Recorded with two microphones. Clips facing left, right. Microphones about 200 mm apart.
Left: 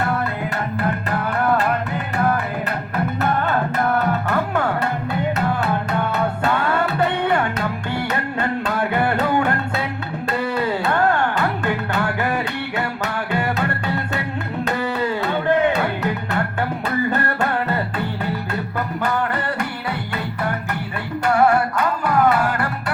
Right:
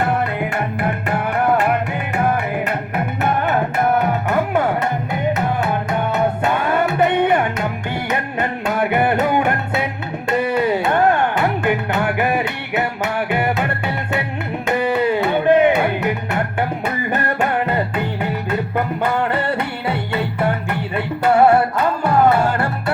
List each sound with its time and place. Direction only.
0.8 s music: 15° right (ahead or behind)
6.4 s music: 15° right (ahead or behind)
21.2 s music: 25° right (ahead or behind)